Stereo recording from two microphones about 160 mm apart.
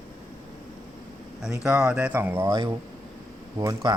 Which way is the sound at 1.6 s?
5° right (ahead or behind).